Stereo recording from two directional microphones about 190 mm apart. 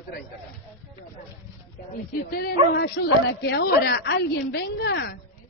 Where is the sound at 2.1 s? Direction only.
55° left (ahead or behind).